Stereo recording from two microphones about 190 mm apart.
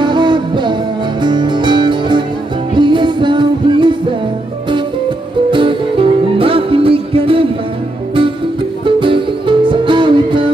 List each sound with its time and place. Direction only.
0.0 s music: 25° right (ahead or behind)
5.5 s music: 25° right (ahead or behind)
8.8 s music: 25° right (ahead or behind)